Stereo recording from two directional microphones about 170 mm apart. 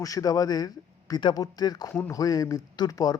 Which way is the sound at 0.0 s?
20° left (ahead or behind).